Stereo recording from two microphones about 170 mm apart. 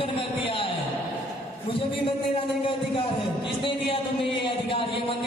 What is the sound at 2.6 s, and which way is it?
A man's voice, 30° left (ahead or behind).